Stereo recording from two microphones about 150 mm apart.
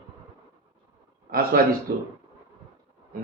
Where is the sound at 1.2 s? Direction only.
85° right.